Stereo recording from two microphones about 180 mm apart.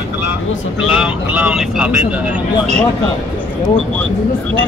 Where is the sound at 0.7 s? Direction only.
5° right (ahead or behind).